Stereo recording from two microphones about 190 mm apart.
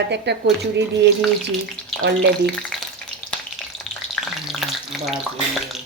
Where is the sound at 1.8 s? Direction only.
5° left (ahead or behind).